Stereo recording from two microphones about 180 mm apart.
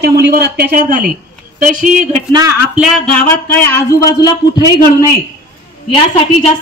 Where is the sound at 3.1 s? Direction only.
10° left (ahead or behind).